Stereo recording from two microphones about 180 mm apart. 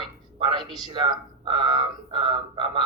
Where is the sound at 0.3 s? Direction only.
25° right (ahead or behind).